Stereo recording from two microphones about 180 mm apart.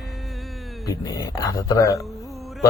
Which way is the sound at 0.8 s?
20° left (ahead or behind).